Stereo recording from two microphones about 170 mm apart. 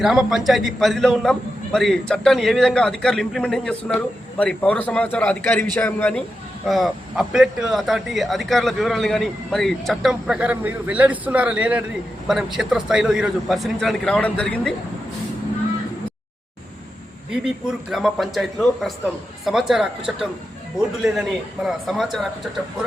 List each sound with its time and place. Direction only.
0.0 s a man's voice: 5° right (ahead or behind)
17.9 s a man's voice: centre (ahead or behind)